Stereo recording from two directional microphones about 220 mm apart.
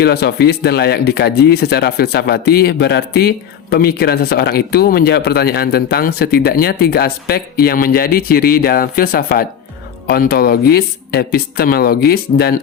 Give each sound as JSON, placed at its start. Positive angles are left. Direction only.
{"t": 0.0, "sound": "speech", "side_deg": 45}